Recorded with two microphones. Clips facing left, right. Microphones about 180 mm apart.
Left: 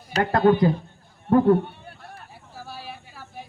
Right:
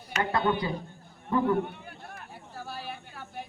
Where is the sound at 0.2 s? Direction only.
60° left (ahead or behind).